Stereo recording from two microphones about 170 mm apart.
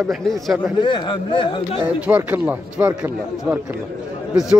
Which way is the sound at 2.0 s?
10° right (ahead or behind).